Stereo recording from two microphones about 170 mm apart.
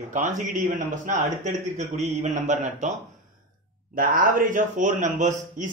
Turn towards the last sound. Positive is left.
turn(degrees=-45)  # may be behind; listen again after turning